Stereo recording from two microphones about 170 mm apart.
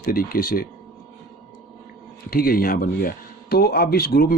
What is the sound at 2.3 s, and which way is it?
Speech, 60° left (ahead or behind).